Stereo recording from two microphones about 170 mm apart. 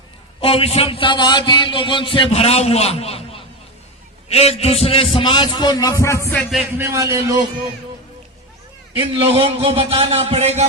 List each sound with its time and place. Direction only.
0.4 s a man's voice: 35° left (ahead or behind); by 6.5 s 15° left (ahead or behind)
6.7 s a man's voice: 15° right (ahead or behind)
9.0 s a man's voice: 35° right (ahead or behind)